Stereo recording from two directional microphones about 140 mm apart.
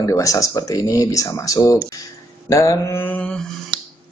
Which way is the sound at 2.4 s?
25° left (ahead or behind).